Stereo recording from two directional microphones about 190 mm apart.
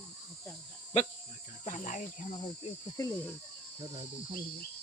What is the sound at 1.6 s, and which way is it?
Cricket, 40° left (ahead or behind).